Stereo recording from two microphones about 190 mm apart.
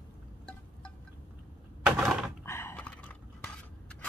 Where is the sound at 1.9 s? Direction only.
5° right (ahead or behind).